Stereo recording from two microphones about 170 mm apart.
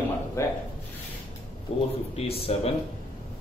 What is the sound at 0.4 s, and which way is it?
Speech, 15° left (ahead or behind).